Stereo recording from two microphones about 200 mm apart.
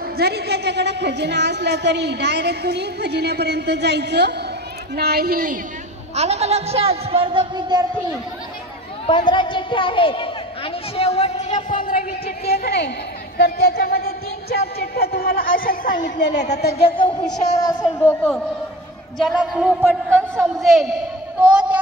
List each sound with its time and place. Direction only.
0.2 s a woman's voice: 55° right (ahead or behind)
6.1 s speech: 35° right (ahead or behind)
9.0 s a sound: 25° left (ahead or behind); by 16.1 s 45° left (ahead or behind)
16.2 s a woman's voice: 60° left (ahead or behind)
16.8 s a woman's voice: 25° left (ahead or behind)
18.0 s a man's voice: 5° left (ahead or behind); by 20.6 s 10° right (ahead or behind)
20.6 s a sound: centre (ahead or behind)